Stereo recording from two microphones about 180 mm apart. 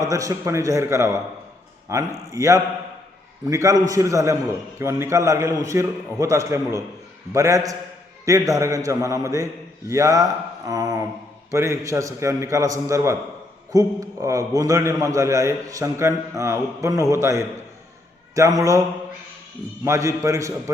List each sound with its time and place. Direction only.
0.0 s a man's voice: 20° right (ahead or behind)
10.7 s a sound: 20° right (ahead or behind)
11.5 s a man's voice: 15° right (ahead or behind)
19.8 s a man's voice: 15° right (ahead or behind)